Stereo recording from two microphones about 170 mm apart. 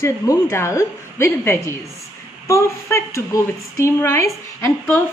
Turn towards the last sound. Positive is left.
turn(degrees=10)  # may be behind; listen again after turning